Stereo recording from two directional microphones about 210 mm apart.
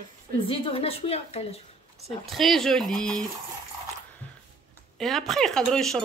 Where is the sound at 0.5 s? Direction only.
25° left (ahead or behind).